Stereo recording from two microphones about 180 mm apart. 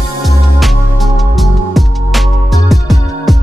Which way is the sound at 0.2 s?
Centre (ahead or behind).